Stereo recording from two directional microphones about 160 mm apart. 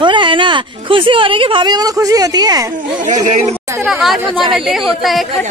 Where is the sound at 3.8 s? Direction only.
5° right (ahead or behind).